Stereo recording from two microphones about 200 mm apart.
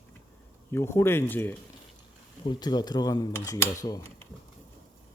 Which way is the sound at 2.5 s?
20° left (ahead or behind).